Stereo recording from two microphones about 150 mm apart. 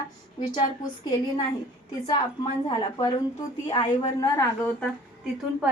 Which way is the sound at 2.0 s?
30° left (ahead or behind).